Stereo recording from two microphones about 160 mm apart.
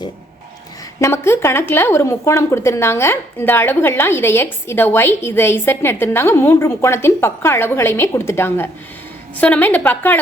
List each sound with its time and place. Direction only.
0.9 s a woman's voice: 20° left (ahead or behind)